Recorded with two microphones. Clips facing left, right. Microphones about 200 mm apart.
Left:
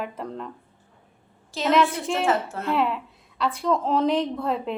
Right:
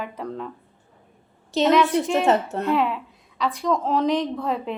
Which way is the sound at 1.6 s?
Centre (ahead or behind).